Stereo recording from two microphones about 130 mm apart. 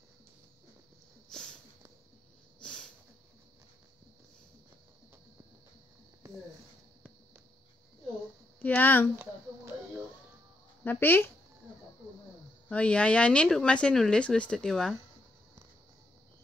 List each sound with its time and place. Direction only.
1.3 s a sound: 5° left (ahead or behind)
2.6 s snort: 5° left (ahead or behind)
8.5 s speech: 15° left (ahead or behind)
10.8 s speech: 15° left (ahead or behind)
12.6 s speech: 10° left (ahead or behind)